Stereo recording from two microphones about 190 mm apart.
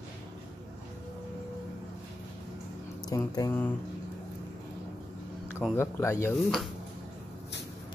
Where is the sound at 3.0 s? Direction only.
20° left (ahead or behind).